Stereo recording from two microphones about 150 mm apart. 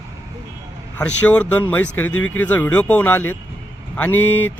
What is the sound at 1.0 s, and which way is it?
Speech, 10° left (ahead or behind).